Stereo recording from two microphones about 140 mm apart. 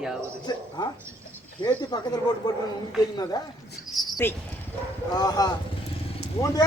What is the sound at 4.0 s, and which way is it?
Cricket, centre (ahead or behind).